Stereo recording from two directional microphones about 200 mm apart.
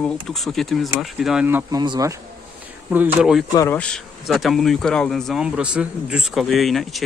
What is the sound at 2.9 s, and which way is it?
Speech, 5° right (ahead or behind).